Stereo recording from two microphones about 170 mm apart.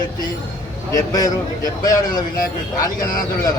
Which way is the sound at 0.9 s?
20° left (ahead or behind).